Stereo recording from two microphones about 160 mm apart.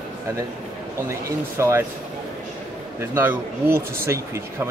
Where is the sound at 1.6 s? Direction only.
15° right (ahead or behind).